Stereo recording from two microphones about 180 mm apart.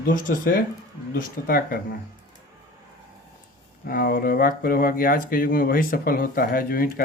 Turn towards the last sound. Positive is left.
turn(degrees=50)  # may be behind; listen again after turning